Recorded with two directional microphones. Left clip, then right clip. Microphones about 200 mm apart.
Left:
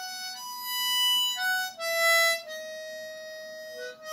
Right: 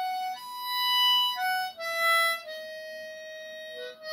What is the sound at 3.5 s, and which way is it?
Harmonica, 70° left (ahead or behind).